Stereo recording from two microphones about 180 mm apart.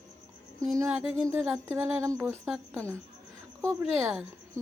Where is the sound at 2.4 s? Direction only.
5° right (ahead or behind).